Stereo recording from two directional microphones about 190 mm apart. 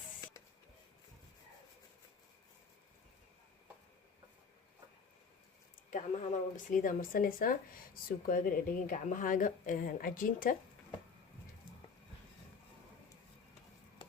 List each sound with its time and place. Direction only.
5.9 s speech: 45° left (ahead or behind)